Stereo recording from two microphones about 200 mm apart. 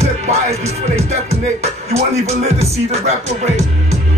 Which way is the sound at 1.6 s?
30° right (ahead or behind).